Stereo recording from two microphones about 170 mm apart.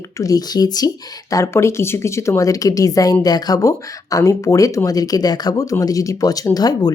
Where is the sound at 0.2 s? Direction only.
20° left (ahead or behind).